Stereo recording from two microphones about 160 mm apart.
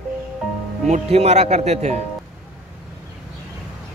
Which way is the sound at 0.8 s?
45° right (ahead or behind).